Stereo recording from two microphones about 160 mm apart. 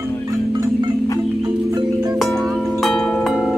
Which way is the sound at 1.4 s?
25° right (ahead or behind).